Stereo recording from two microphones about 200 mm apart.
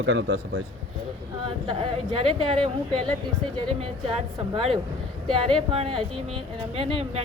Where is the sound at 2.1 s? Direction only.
30° right (ahead or behind).